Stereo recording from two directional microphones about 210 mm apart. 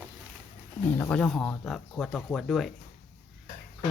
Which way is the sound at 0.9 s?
10° left (ahead or behind).